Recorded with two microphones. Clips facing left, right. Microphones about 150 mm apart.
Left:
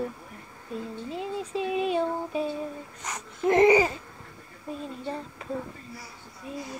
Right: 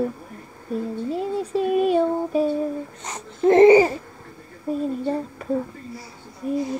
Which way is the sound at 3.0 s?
30° right (ahead or behind).